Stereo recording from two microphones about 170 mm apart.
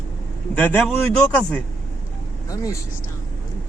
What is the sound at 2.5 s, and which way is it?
Speech, 20° left (ahead or behind).